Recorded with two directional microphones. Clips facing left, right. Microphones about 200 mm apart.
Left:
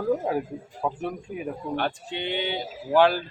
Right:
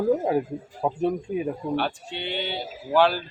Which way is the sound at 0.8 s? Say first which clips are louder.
Right 5 dB; 25° right (ahead or behind).